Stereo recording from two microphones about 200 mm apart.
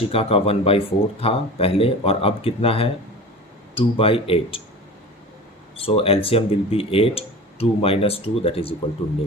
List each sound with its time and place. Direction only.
0.1 s speech: 30° left (ahead or behind)
5.8 s speech: 30° left (ahead or behind)